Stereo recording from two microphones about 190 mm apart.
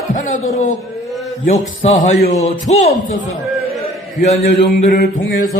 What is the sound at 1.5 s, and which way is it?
Speech, 35° left (ahead or behind).